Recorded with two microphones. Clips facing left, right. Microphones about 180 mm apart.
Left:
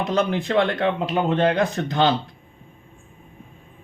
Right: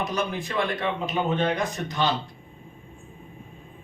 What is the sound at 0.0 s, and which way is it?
Speech, 60° left (ahead or behind).